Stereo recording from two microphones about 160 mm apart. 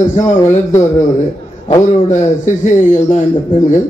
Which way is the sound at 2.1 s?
50° left (ahead or behind).